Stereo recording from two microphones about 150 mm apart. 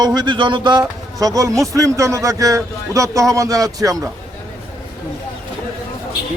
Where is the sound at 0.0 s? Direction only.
30° right (ahead or behind).